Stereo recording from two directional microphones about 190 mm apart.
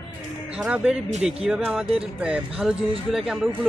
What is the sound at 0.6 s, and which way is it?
A man's voice, 5° right (ahead or behind).